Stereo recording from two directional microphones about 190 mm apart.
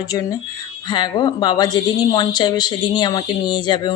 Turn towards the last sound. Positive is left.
turn(degrees=25)  # may be behind; listen again after turning